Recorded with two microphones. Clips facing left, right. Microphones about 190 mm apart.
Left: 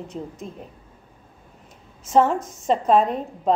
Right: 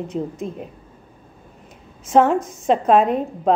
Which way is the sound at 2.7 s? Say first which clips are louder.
Right 3 dB; 60° right (ahead or behind).